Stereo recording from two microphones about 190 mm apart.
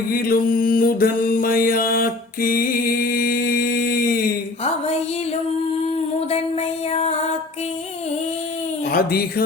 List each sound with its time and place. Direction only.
0.1 s mantra: 50° left (ahead or behind)
6.1 s music: 30° left (ahead or behind)
8.9 s a sound: 50° left (ahead or behind)